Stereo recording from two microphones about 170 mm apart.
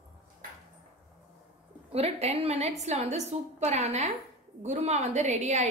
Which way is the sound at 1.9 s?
35° right (ahead or behind).